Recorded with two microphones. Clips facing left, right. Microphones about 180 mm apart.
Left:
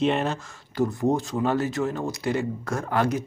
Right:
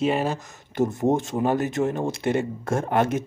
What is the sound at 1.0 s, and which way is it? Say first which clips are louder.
Speech: right 2 dB; 25° right (ahead or behind).